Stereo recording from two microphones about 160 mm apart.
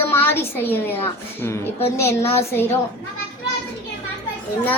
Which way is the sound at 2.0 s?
15° left (ahead or behind).